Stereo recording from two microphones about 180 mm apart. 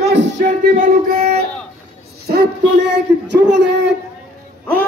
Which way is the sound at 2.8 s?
75° right (ahead or behind).